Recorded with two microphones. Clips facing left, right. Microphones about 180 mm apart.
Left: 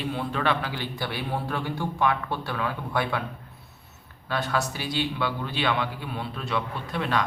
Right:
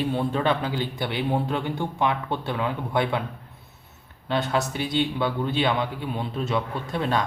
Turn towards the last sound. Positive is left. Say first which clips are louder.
# right 2 dB
turn(degrees=-25)  # may be behind; listen again after turning